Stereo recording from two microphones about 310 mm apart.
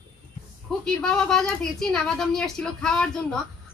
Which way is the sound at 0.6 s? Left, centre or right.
Centre.